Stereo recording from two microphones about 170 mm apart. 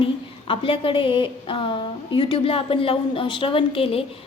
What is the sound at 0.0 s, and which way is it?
A woman's voice, 30° left (ahead or behind).